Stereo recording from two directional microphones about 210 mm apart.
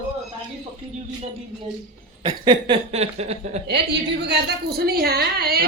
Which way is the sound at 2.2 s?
25° right (ahead or behind).